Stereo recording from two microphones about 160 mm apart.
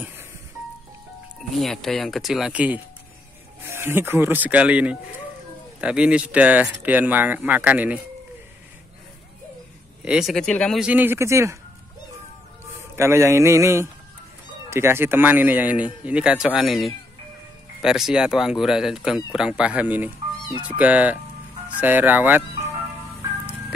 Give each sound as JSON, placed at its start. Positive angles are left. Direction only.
{"t": 1.6, "sound": "speech", "side_deg": 0}
{"t": 10.0, "sound": "speech", "side_deg": -5}
{"t": 10.8, "sound": "speech", "side_deg": -10}
{"t": 12.9, "sound": "speech", "side_deg": -15}